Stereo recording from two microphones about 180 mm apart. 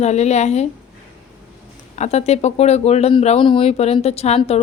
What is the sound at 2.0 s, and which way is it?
Speech, 40° left (ahead or behind).